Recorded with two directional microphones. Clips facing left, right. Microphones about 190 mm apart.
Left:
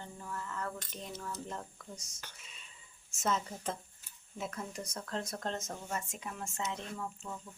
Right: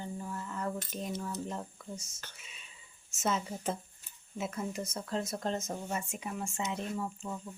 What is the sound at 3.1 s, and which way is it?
Speech, 5° right (ahead or behind).